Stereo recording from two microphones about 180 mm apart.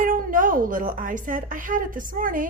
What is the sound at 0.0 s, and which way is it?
A woman's voice, 50° right (ahead or behind).